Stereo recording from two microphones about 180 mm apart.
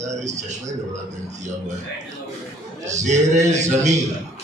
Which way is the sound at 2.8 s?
40° right (ahead or behind).